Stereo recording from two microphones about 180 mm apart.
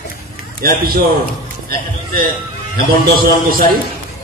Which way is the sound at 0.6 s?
55° right (ahead or behind).